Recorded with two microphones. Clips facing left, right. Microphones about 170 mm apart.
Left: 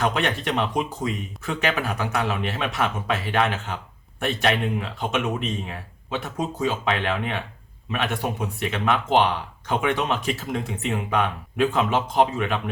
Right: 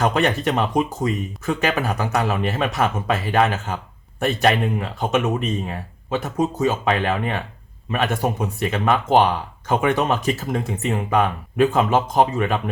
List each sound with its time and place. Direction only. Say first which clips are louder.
0.0 s speech: right 5 dB; 40° right (ahead or behind)